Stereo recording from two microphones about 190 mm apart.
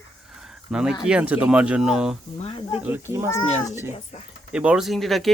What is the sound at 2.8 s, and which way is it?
Speech, 10° right (ahead or behind).